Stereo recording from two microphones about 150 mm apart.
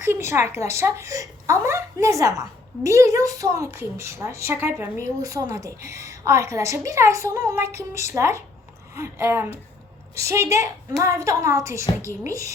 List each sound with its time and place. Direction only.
0.0 s speech: 15° right (ahead or behind)